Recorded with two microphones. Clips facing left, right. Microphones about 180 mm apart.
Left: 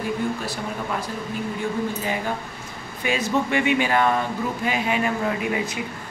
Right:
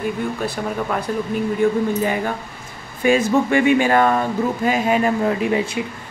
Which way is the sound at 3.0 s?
45° right (ahead or behind).